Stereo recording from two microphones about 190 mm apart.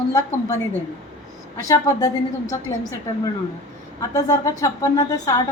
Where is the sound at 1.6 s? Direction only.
20° left (ahead or behind).